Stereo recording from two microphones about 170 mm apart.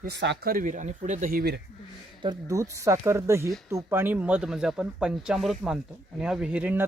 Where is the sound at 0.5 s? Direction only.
50° right (ahead or behind).